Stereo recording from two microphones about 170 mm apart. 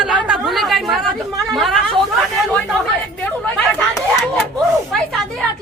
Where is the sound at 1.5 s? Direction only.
Centre (ahead or behind).